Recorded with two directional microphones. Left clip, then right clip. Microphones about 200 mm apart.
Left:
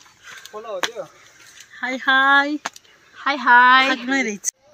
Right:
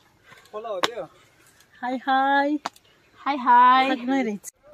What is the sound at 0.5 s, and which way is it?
Speech, 15° right (ahead or behind).